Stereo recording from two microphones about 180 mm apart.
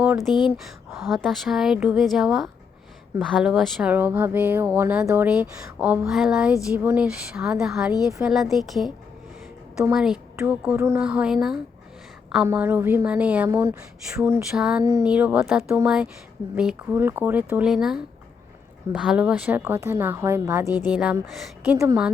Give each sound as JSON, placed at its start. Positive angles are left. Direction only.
{"t": 0.0, "sound": "a woman's voice", "side_deg": -5}
{"t": 9.9, "sound": "a woman's voice", "side_deg": -5}
{"t": 20.7, "sound": "speech", "side_deg": 20}
{"t": 20.9, "sound": "a woman's voice", "side_deg": -5}